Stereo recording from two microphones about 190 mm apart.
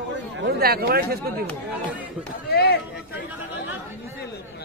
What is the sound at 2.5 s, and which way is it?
Speech, 55° left (ahead or behind).